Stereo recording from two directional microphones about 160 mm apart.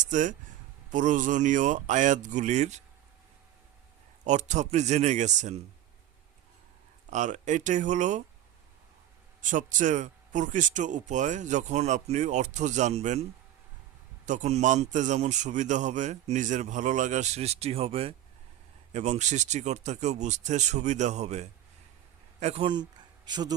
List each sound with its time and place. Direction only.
0.0 s a man's voice: 50° right (ahead or behind)
4.2 s a man's voice: 50° right (ahead or behind)
7.1 s a man's voice: 50° right (ahead or behind)
9.4 s a man's voice: 50° right (ahead or behind)
14.3 s a man's voice: 45° right (ahead or behind); by 23.6 s 25° right (ahead or behind)